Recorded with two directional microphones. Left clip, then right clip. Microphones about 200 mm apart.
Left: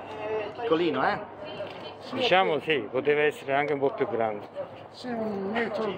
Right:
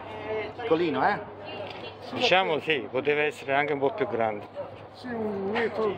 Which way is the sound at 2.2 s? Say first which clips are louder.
Even; centre (ahead or behind).